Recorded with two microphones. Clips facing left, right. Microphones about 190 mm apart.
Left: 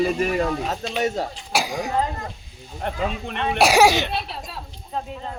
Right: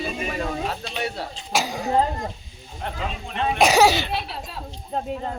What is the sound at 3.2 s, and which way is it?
Speech, 60° left (ahead or behind).